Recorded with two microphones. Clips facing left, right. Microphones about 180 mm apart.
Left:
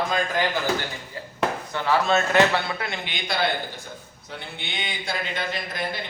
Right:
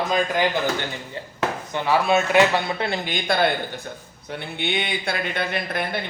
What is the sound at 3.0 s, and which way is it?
Speech, 50° right (ahead or behind).